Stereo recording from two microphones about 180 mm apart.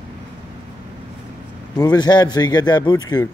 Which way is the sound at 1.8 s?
20° left (ahead or behind).